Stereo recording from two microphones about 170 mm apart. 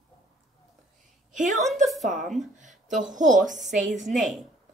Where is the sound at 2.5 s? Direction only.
45° right (ahead or behind).